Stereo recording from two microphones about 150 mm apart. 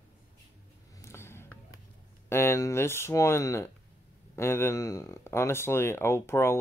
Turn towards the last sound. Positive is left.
turn(degrees=15)  # may be behind; listen again after turning